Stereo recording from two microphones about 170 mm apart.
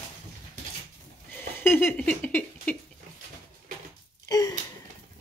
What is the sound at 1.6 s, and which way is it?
Speech, 15° left (ahead or behind).